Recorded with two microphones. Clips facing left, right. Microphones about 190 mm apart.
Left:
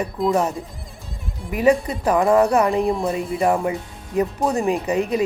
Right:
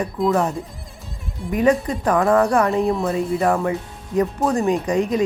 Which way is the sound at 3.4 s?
15° left (ahead or behind).